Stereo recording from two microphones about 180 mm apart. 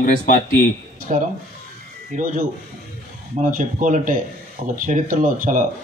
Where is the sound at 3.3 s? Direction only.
45° right (ahead or behind).